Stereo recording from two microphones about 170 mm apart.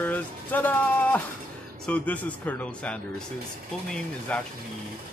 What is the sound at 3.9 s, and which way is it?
Speech, 5° left (ahead or behind).